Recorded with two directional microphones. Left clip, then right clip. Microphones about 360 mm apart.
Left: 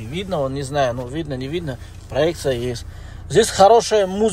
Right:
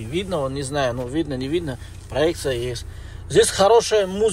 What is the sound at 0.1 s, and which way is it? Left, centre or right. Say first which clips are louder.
Speech: left 1 dB; centre.